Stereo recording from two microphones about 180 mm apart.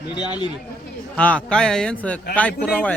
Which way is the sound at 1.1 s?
10° left (ahead or behind).